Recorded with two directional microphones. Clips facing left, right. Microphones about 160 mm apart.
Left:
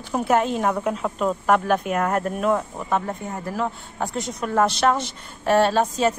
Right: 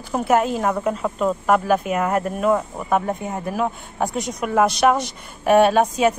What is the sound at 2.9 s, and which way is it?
A woman's voice, 15° right (ahead or behind).